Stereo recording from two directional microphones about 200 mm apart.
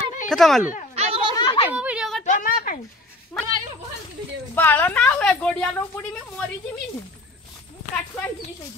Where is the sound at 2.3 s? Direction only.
45° left (ahead or behind).